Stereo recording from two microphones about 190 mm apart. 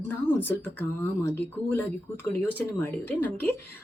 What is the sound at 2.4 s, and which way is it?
Speech, 10° left (ahead or behind).